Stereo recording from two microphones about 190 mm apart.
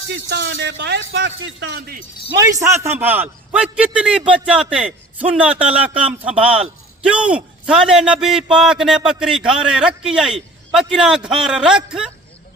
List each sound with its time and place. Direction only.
0.1 s speech: 60° right (ahead or behind)
2.4 s a man's voice: 15° right (ahead or behind)